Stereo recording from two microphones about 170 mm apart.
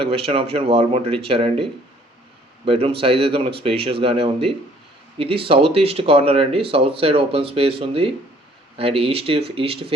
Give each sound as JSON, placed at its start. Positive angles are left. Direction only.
{"t": 0.0, "sound": "speech", "side_deg": -35}
{"t": 2.6, "sound": "speech", "side_deg": -35}